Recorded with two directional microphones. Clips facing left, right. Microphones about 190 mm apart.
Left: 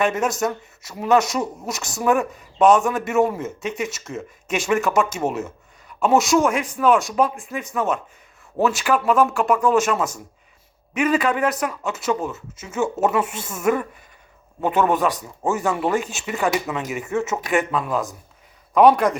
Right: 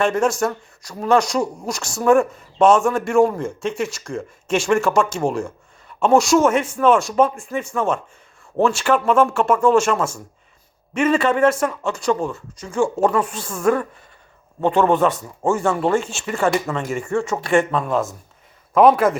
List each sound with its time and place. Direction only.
0.0 s speech: 5° left (ahead or behind)
11.3 s speech: 15° left (ahead or behind)
11.8 s speech: 5° left (ahead or behind)
16.0 s speech: 15° left (ahead or behind)
16.5 s speech: 5° left (ahead or behind)